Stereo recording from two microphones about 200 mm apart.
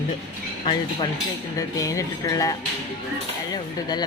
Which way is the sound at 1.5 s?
15° left (ahead or behind).